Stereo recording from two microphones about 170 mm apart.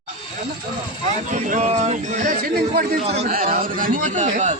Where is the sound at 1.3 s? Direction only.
45° right (ahead or behind).